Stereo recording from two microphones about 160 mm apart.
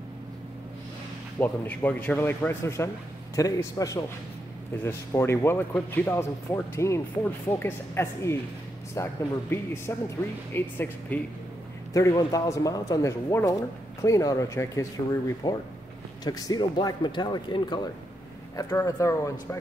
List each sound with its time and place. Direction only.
1.4 s speech: 10° left (ahead or behind)